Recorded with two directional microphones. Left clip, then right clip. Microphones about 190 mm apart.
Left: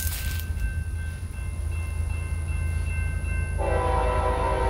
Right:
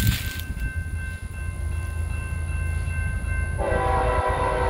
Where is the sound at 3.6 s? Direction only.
20° left (ahead or behind).